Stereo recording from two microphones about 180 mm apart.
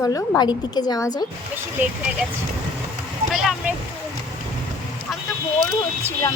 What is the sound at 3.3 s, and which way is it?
Vehicle, centre (ahead or behind).